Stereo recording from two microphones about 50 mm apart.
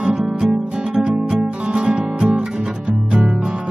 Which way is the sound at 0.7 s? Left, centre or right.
Centre.